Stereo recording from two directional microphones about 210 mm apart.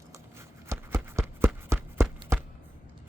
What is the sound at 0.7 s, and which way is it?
Horse, 15° right (ahead or behind).